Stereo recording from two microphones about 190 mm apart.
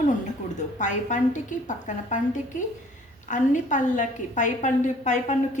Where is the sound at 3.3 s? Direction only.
40° left (ahead or behind).